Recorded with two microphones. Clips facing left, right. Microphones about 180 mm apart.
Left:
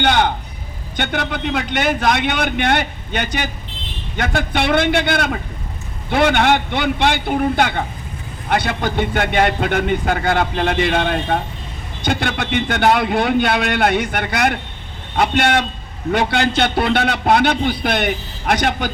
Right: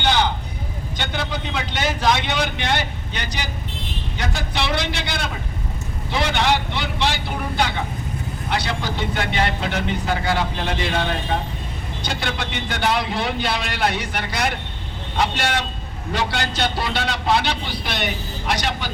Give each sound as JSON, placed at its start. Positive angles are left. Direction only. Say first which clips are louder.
{"t": 0.0, "sound": "vehicle", "louder": "left 4 dB", "side_deg": 55}
{"t": 0.9, "sound": "speech", "louder": "left 5 dB", "side_deg": 60}